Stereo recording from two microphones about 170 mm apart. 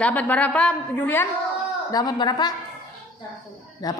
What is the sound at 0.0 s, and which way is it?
A woman's voice, 10° left (ahead or behind).